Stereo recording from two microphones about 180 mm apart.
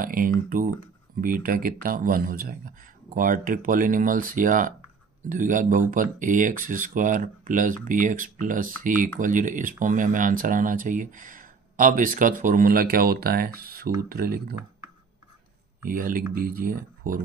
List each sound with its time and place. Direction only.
0.0 s speech: 50° right (ahead or behind)
15.8 s speech: 50° right (ahead or behind)